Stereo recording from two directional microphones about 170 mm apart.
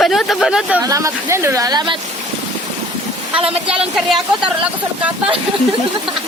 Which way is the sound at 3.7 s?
5° right (ahead or behind).